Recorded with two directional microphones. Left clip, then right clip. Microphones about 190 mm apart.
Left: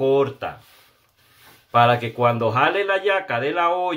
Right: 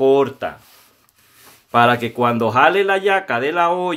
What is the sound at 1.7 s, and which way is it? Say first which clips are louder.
Speech: right 2 dB; 50° right (ahead or behind).